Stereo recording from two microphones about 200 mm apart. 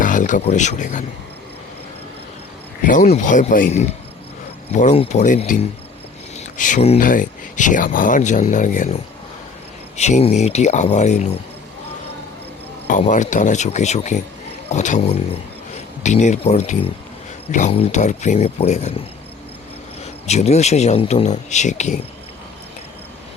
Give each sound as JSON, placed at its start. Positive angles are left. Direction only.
{"t": 0.0, "sound": "speech", "side_deg": 40}
{"t": 2.8, "sound": "speech", "side_deg": 40}
{"t": 6.6, "sound": "speech", "side_deg": 40}
{"t": 10.0, "sound": "speech", "side_deg": 30}
{"t": 12.9, "sound": "speech", "side_deg": 40}
{"t": 20.2, "sound": "speech", "side_deg": 35}